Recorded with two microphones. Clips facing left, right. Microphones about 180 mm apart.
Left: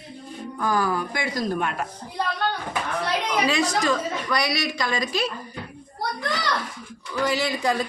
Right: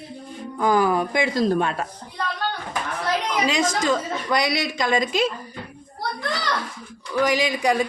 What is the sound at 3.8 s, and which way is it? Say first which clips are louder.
A woman's voice: right 1 dB; 20° right (ahead or behind).